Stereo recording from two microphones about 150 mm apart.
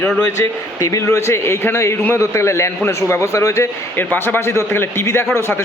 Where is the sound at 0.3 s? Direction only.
20° left (ahead or behind).